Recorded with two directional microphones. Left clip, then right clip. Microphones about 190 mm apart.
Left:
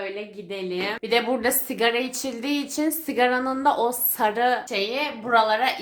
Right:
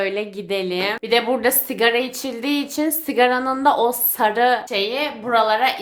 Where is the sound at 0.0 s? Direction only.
50° right (ahead or behind).